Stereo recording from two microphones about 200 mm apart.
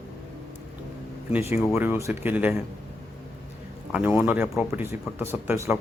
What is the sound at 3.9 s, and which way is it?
Speech, 5° right (ahead or behind).